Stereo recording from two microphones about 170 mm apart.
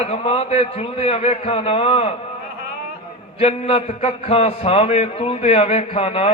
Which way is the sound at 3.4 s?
35° left (ahead or behind).